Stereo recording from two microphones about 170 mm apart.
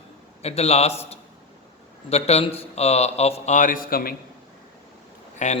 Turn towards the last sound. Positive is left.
turn(degrees=45)  # may be behind; listen again after turning